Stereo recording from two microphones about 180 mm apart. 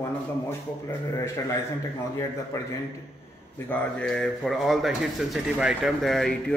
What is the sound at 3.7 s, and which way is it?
Speech, 5° left (ahead or behind).